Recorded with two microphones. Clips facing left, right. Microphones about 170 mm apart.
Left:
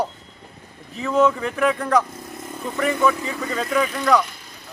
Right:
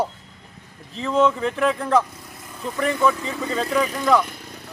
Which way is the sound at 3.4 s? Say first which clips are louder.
Right 3 dB; 30° right (ahead or behind).